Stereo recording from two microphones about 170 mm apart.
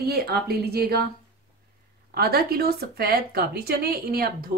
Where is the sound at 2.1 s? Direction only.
65° right (ahead or behind).